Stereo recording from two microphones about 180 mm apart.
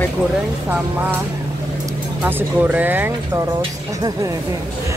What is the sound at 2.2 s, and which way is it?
A woman's voice, 10° right (ahead or behind).